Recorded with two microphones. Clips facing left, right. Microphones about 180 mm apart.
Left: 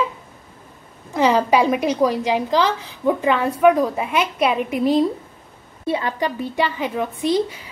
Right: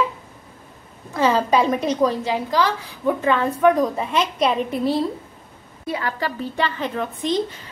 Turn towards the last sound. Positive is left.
turn(degrees=10)  # may be behind; listen again after turning